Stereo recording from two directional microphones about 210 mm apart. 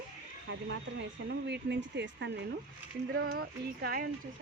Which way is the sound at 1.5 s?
55° right (ahead or behind).